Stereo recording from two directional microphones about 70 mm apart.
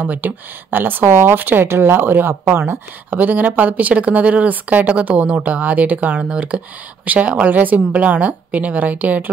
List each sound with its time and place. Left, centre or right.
0.0 s speech: right